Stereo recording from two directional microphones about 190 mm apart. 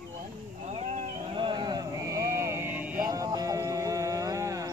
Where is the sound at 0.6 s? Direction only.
40° right (ahead or behind).